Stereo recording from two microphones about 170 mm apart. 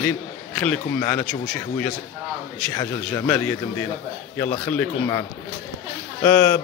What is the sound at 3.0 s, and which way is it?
Speech, 5° left (ahead or behind).